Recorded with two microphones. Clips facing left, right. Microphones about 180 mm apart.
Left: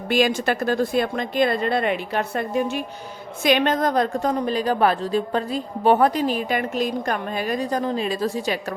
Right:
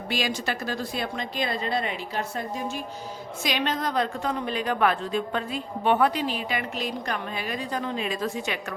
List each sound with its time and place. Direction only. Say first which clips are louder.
0.1 s speech: left 9 dB; 50° left (ahead or behind); by 2.8 s 65° left (ahead or behind)
3.4 s a woman's voice: left 8 dB; 55° left (ahead or behind); by 8.5 s 35° left (ahead or behind)